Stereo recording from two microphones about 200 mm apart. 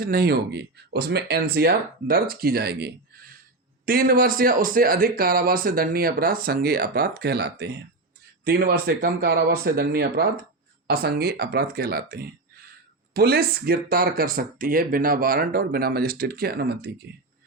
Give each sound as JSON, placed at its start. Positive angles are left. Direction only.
{"t": 0.0, "sound": "speech", "side_deg": -50}